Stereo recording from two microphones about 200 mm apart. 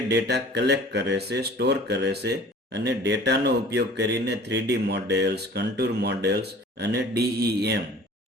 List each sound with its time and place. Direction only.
0.1 s speech: 60° right (ahead or behind)